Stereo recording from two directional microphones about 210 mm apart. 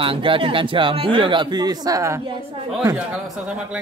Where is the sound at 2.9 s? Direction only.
Centre (ahead or behind).